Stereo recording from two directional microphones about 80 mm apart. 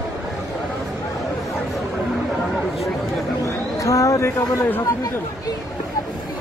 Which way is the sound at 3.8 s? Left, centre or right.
Left.